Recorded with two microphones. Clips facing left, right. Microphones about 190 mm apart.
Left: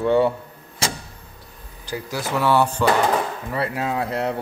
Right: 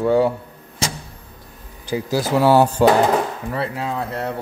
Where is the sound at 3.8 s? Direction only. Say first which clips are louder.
Left 1 dB; 15° left (ahead or behind).